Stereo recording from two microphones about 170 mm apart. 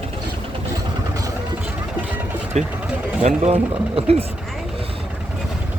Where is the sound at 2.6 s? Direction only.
40° right (ahead or behind).